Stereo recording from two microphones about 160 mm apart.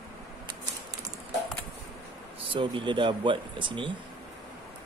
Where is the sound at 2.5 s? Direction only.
30° right (ahead or behind).